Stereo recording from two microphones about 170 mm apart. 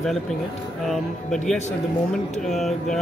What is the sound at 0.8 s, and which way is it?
Speech, centre (ahead or behind).